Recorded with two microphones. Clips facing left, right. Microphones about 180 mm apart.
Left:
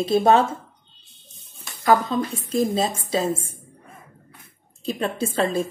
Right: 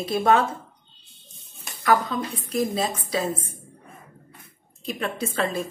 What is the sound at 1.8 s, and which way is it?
A woman's voice, 25° left (ahead or behind).